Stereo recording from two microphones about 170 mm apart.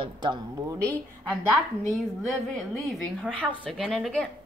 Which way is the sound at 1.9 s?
Centre (ahead or behind).